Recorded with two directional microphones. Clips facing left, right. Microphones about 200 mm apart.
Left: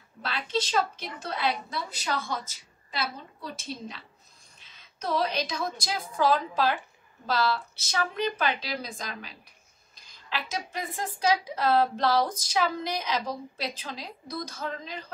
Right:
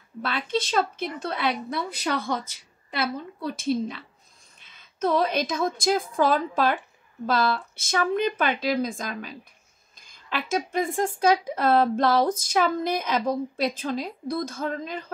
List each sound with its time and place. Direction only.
0.2 s a woman's voice: 55° right (ahead or behind)
4.7 s speech: 50° right (ahead or behind)
10.3 s speech: 50° right (ahead or behind)